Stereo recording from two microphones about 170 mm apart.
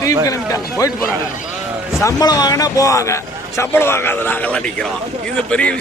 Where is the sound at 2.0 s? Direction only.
20° left (ahead or behind); by 5.7 s 5° left (ahead or behind).